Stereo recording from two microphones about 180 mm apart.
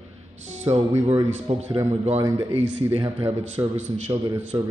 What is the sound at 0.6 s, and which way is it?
Speech, 35° right (ahead or behind).